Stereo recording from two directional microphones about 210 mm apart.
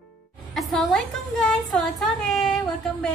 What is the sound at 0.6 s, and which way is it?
A woman's voice, centre (ahead or behind).